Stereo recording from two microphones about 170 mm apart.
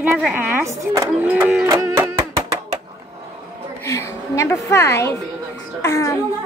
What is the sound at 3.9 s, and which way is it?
A woman's voice, 15° left (ahead or behind).